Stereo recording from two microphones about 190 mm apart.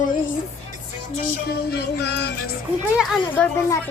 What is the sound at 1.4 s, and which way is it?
Music, 55° left (ahead or behind).